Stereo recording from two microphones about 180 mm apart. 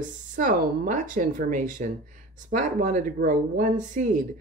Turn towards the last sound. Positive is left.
turn(degrees=-45)  # may be behind; listen again after turning